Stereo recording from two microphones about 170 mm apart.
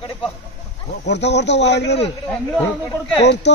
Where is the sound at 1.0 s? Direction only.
90° left.